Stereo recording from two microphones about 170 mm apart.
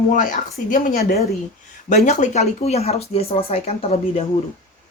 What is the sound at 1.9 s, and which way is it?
Speech, 45° left (ahead or behind).